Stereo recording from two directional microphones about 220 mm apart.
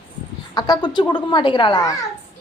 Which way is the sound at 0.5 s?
20° left (ahead or behind).